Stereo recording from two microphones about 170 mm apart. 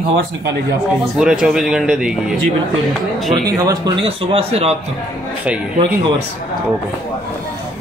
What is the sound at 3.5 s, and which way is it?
A man's voice, 20° right (ahead or behind).